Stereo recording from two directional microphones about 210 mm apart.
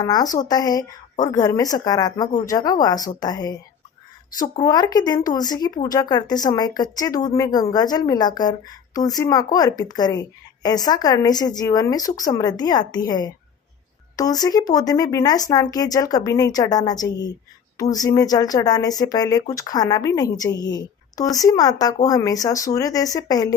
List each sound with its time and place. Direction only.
0.0 s speech: 20° left (ahead or behind)
4.6 s speech: 20° left (ahead or behind)